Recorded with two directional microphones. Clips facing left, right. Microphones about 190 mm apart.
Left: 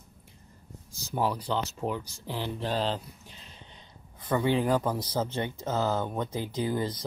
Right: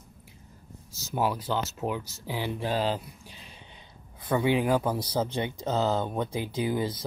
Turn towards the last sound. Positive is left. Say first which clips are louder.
# right 1 dB
turn(degrees=-10)  # may be behind; listen again after turning